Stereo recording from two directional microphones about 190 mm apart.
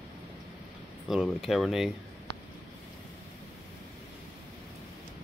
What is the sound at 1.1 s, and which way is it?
Speech, centre (ahead or behind).